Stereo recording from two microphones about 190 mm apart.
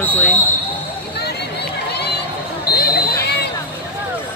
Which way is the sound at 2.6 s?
55° left (ahead or behind).